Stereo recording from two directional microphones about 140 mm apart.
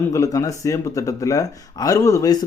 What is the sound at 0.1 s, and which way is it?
Speech, 25° left (ahead or behind).